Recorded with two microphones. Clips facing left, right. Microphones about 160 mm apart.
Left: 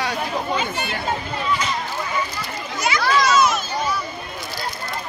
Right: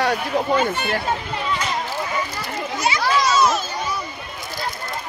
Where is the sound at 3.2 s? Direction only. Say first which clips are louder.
Even; 30° right (ahead or behind).